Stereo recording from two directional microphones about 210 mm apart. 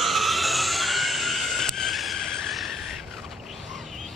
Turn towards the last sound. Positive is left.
turn(degrees=0)  # may be behind; listen again after turning